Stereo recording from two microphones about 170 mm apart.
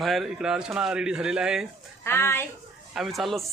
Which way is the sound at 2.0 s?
15° left (ahead or behind).